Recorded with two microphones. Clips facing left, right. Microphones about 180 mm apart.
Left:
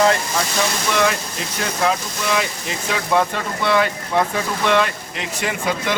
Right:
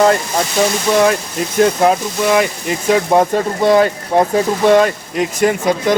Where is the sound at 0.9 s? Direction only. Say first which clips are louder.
Right 7 dB; 40° right (ahead or behind).